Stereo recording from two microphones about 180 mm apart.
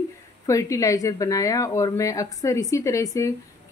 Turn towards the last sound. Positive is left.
turn(degrees=20)  # may be behind; listen again after turning